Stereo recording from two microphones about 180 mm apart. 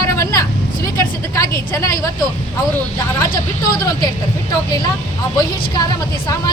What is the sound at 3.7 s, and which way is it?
Speech, 20° left (ahead or behind).